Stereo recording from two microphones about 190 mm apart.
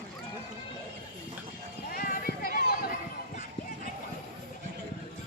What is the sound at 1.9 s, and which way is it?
Run, 50° left (ahead or behind).